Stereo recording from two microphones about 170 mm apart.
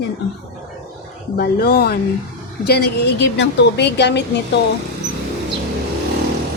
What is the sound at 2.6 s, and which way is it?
A woman's voice, 75° left (ahead or behind).